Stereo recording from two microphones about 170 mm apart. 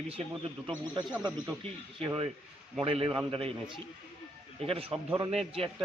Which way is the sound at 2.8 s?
35° right (ahead or behind).